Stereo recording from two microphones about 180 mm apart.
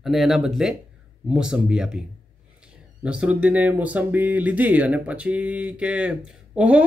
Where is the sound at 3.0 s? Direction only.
5° right (ahead or behind).